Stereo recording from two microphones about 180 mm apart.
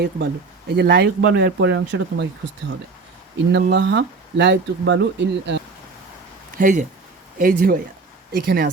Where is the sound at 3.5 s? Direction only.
70° right (ahead or behind).